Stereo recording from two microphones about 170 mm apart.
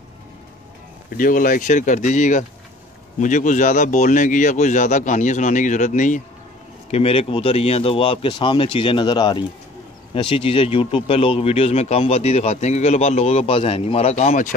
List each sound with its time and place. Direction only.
1.1 s speech: 55° left (ahead or behind)
6.9 s speech: 35° left (ahead or behind)